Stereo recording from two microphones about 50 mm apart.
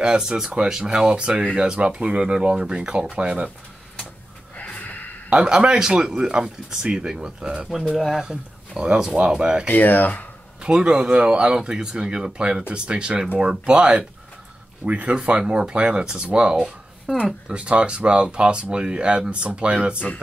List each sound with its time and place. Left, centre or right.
0.0 s speech: centre
4.6 s a sound: left
5.3 s speech: centre
8.0 s speech: centre
8.3 s speech: centre
9.7 s speech: left
10.6 s speech: centre
17.1 s speech: centre
17.5 s speech: right